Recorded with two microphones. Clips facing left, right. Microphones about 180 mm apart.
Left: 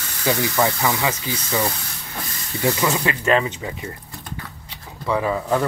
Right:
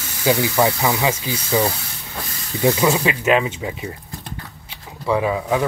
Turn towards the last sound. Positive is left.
turn(degrees=-5)  # may be behind; listen again after turning